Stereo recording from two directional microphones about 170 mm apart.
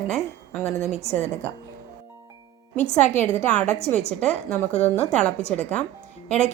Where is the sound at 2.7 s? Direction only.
45° left (ahead or behind).